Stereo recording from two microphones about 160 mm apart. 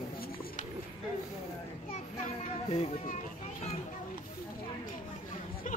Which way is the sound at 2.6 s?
40° left (ahead or behind).